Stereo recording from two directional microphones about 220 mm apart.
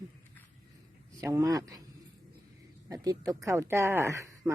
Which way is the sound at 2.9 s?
15° right (ahead or behind).